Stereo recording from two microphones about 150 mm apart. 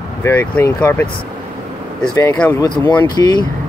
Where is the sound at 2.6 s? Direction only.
15° left (ahead or behind).